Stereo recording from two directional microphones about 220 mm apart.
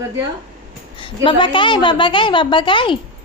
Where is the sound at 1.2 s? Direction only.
20° left (ahead or behind).